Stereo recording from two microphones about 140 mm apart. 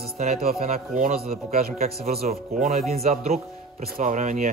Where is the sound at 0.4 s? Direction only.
90° right.